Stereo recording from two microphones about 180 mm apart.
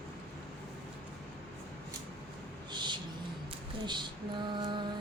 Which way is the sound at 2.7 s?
25° right (ahead or behind).